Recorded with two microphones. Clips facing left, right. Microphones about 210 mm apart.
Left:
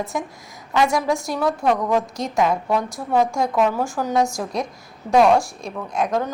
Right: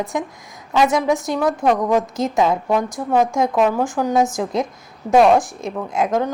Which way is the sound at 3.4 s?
20° right (ahead or behind).